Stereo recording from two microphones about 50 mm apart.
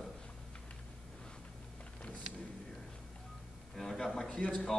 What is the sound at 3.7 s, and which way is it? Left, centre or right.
Speech, centre.